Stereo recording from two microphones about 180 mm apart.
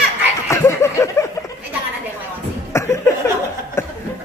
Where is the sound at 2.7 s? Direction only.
15° left (ahead or behind).